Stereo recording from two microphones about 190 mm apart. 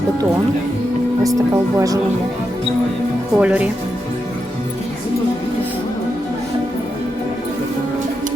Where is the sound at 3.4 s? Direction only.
5° right (ahead or behind).